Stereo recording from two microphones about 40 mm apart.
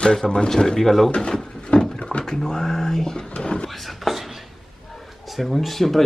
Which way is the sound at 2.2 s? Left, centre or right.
Centre.